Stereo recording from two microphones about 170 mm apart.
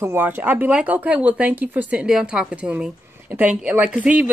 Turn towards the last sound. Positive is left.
turn(degrees=-10)  # may be behind; listen again after turning